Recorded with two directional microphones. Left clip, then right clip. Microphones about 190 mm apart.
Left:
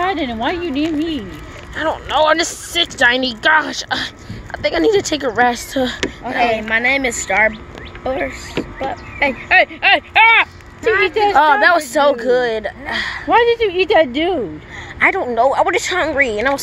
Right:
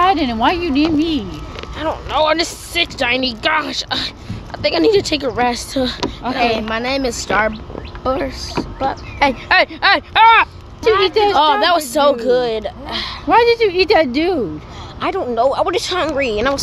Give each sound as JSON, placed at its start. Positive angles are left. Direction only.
{"t": 0.0, "sound": "speech", "side_deg": -35}
{"t": 1.8, "sound": "a woman's voice", "side_deg": 5}
{"t": 6.3, "sound": "speech", "side_deg": -10}
{"t": 8.0, "sound": "speech", "side_deg": -40}
{"t": 11.3, "sound": "a woman's voice", "side_deg": -5}
{"t": 13.3, "sound": "speech", "side_deg": -30}
{"t": 15.0, "sound": "a woman's voice", "side_deg": 0}